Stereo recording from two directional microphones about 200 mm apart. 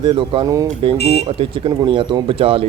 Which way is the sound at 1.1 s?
30° right (ahead or behind).